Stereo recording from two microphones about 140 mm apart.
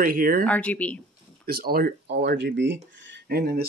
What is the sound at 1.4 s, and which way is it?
Speech, 90° right.